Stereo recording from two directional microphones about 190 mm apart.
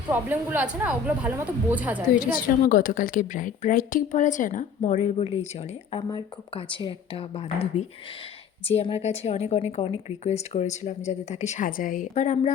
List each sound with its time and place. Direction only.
0.1 s speech: 10° right (ahead or behind)
2.3 s a woman's voice: 45° left (ahead or behind)